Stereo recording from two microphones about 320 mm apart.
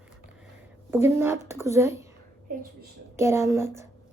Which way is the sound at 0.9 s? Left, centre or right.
Centre.